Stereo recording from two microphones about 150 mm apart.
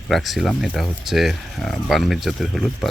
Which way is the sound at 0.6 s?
Centre (ahead or behind).